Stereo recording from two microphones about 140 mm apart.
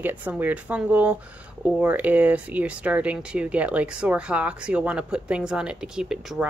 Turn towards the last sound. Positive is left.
turn(degrees=-5)  # may be behind; listen again after turning